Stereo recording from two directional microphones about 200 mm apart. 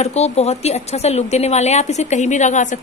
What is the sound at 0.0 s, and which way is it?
A woman's voice, 35° left (ahead or behind).